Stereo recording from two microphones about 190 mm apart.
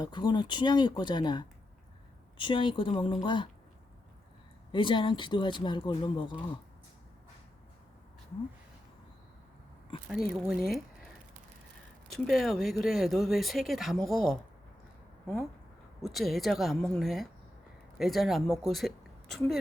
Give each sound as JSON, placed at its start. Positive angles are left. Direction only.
{"t": 0.0, "sound": "speech", "side_deg": 25}
{"t": 4.7, "sound": "speech", "side_deg": 25}
{"t": 10.1, "sound": "speech", "side_deg": 0}
{"t": 12.1, "sound": "speech", "side_deg": 0}
{"t": 16.0, "sound": "speech", "side_deg": 0}
{"t": 18.7, "sound": "a sound", "side_deg": 0}